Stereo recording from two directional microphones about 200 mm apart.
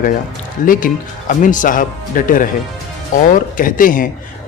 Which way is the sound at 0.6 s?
45° left (ahead or behind).